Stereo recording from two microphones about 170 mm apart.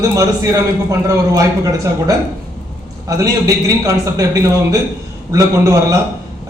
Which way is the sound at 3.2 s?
20° right (ahead or behind).